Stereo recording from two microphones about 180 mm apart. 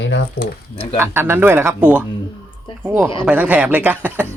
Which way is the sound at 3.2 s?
10° right (ahead or behind).